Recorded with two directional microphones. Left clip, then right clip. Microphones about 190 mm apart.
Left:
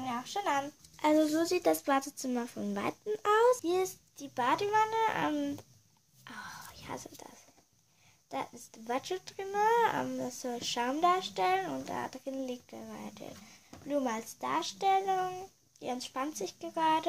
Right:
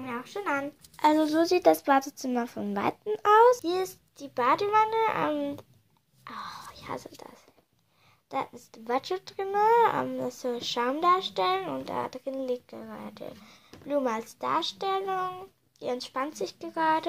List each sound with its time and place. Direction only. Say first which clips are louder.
0.0 s speech: right 1 dB; 15° left (ahead or behind)
0.9 s speech: right 5 dB; 5° right (ahead or behind)
6.2 s whispering: right 6 dB; centre (ahead or behind)
8.3 s speech: right 6 dB; centre (ahead or behind)